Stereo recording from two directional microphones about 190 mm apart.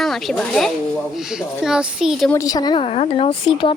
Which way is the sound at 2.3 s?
20° left (ahead or behind).